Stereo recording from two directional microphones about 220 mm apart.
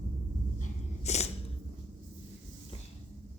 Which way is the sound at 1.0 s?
30° left (ahead or behind).